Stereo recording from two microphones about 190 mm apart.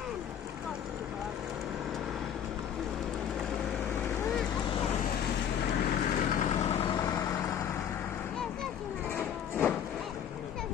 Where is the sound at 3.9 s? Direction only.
10° left (ahead or behind).